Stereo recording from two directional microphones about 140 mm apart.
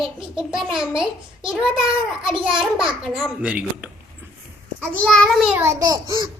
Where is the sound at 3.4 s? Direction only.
10° right (ahead or behind).